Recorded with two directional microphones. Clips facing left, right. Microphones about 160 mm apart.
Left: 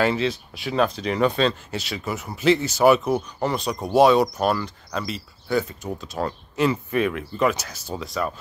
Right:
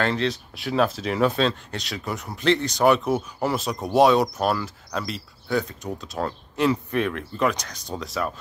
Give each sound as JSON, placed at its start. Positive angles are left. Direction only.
{"t": 0.0, "sound": "speech", "side_deg": 5}